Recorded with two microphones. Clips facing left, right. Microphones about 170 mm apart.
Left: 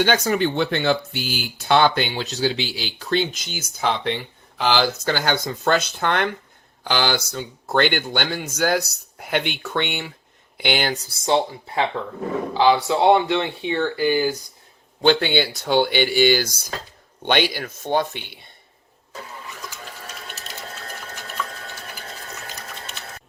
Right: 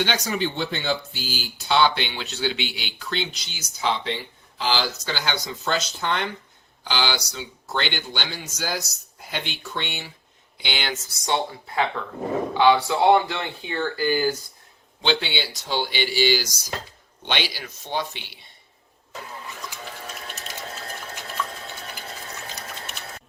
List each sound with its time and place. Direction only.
0.0 s a man's voice: 50° left (ahead or behind); by 14.3 s 15° left (ahead or behind)
15.0 s speech: 50° left (ahead or behind)